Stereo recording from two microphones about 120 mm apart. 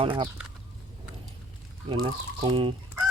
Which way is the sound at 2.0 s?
40° right (ahead or behind).